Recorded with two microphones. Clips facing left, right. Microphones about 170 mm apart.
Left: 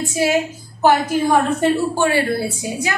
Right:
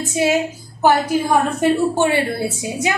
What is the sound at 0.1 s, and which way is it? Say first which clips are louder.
Speech: right 2 dB; 20° right (ahead or behind).